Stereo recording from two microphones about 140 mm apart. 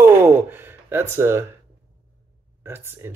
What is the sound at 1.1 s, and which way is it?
Speech, 15° right (ahead or behind).